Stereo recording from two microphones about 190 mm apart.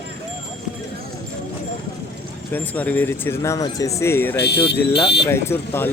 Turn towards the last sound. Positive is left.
turn(degrees=10)  # may be behind; listen again after turning